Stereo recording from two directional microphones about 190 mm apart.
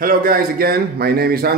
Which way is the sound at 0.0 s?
50° right (ahead or behind).